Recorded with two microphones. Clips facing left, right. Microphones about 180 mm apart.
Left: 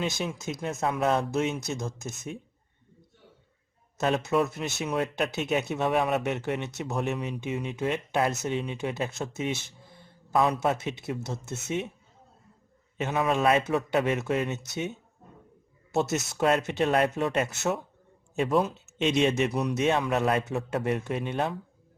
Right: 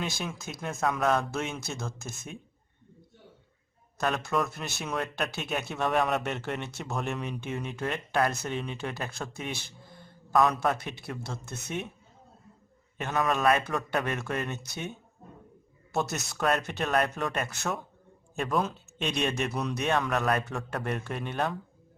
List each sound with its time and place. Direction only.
0.0 s speech: 20° left (ahead or behind)
3.9 s speech: 25° left (ahead or behind)
13.0 s speech: 20° left (ahead or behind)